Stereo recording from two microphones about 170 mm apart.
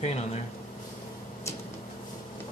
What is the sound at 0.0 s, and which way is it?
Speech, 40° left (ahead or behind).